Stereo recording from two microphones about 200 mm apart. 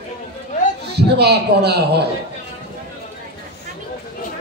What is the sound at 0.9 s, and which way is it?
A woman's voice, 55° right (ahead or behind).